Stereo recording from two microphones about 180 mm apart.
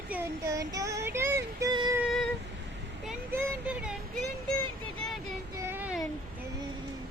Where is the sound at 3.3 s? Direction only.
5° right (ahead or behind).